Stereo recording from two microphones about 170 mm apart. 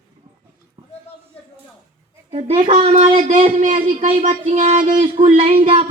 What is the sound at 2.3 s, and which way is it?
Speech, 40° right (ahead or behind).